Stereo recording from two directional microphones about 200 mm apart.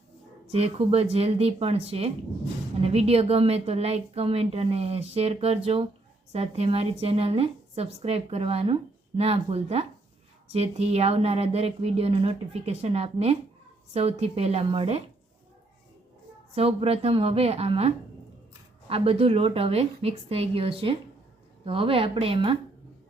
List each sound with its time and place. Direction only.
0.5 s a woman's voice: 30° right (ahead or behind)
16.6 s a woman's voice: 30° right (ahead or behind)